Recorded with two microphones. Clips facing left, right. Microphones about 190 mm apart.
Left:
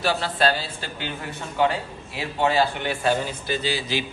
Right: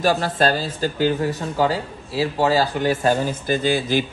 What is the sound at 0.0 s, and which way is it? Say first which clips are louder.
A man's voice: right 4 dB; 45° right (ahead or behind).